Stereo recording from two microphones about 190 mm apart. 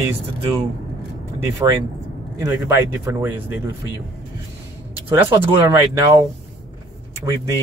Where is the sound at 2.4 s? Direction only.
15° right (ahead or behind).